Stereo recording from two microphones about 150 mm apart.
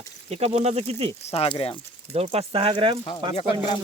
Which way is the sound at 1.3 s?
35° left (ahead or behind).